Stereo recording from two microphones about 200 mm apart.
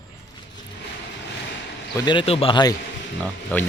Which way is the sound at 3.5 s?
10° left (ahead or behind).